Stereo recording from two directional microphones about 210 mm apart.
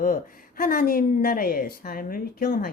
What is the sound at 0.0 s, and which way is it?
A woman's voice, 40° left (ahead or behind).